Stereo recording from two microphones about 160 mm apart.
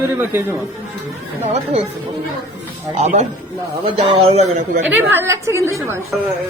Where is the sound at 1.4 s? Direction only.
45° right (ahead or behind).